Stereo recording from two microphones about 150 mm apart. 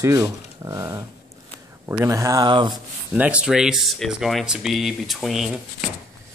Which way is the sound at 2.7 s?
10° right (ahead or behind).